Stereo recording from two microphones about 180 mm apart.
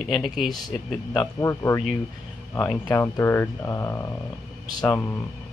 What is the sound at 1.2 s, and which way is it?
Speech, 15° left (ahead or behind).